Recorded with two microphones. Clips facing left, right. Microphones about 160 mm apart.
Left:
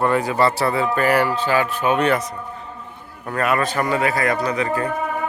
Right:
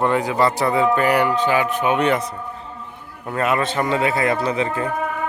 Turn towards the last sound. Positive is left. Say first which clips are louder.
# even
turn(degrees=-25)  # may be behind; listen again after turning